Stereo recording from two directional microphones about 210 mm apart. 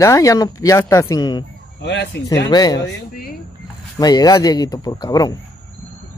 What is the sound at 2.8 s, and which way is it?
Speech, 50° left (ahead or behind).